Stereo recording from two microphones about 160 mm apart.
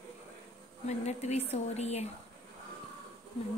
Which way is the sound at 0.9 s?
45° left (ahead or behind).